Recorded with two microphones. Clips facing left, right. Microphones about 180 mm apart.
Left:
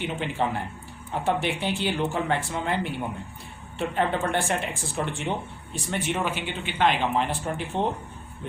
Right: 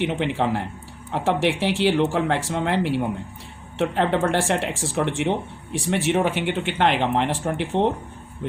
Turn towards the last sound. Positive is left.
turn(degrees=-80)